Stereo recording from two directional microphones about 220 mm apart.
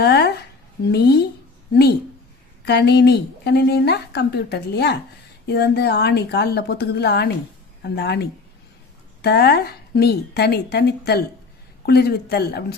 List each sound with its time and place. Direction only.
0.0 s a sound: 45° left (ahead or behind)
0.9 s a woman's voice: 50° left (ahead or behind)
2.6 s a woman's voice: 50° left (ahead or behind)